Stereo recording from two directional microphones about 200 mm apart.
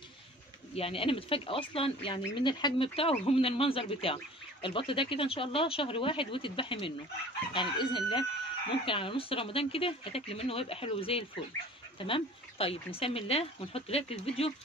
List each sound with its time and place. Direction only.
0.7 s speech: 30° left (ahead or behind)